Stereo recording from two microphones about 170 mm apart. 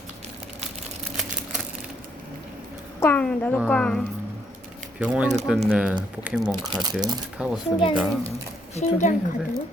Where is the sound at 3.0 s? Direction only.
10° left (ahead or behind).